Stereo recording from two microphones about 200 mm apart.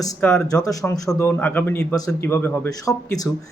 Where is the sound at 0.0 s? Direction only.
10° left (ahead or behind).